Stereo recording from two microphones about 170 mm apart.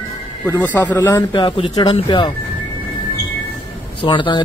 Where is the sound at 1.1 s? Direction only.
25° left (ahead or behind).